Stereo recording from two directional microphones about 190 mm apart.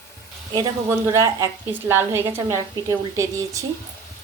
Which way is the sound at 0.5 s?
15° right (ahead or behind).